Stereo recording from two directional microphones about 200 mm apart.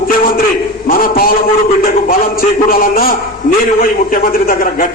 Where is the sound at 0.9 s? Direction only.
45° left (ahead or behind).